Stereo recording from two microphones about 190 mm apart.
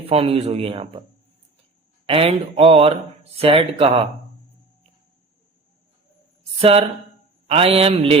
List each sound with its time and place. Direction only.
0.0 s speech: 30° right (ahead or behind)
2.0 s speech: 30° right (ahead or behind)
6.6 s speech: 30° right (ahead or behind)